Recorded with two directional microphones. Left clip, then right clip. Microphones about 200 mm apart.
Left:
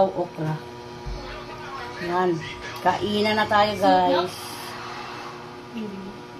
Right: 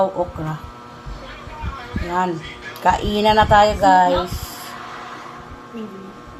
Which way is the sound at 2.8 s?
30° right (ahead or behind).